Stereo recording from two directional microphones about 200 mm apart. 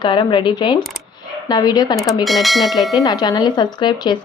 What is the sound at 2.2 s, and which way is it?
Speech, centre (ahead or behind).